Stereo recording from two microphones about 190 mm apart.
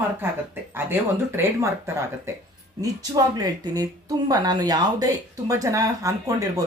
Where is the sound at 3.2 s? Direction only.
20° right (ahead or behind).